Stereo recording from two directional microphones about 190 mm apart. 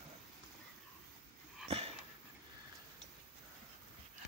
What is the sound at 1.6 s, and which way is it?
Dog, 30° right (ahead or behind).